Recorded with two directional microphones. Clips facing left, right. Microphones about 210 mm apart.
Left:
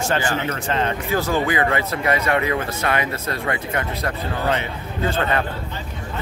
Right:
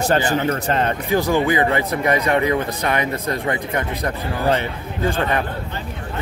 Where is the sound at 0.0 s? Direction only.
35° right (ahead or behind).